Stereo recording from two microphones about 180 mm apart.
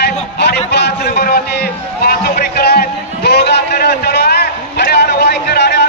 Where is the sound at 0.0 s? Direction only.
70° left (ahead or behind).